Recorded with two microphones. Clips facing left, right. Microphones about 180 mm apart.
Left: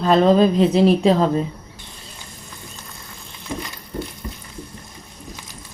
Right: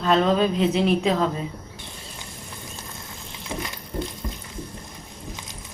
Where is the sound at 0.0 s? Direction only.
35° left (ahead or behind).